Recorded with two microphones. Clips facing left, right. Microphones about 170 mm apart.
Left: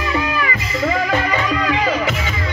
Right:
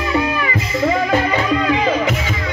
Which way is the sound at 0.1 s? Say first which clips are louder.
Right 3 dB; 25° right (ahead or behind).